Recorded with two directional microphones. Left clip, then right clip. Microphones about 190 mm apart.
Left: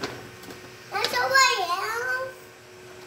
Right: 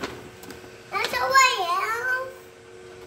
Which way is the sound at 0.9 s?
Centre (ahead or behind).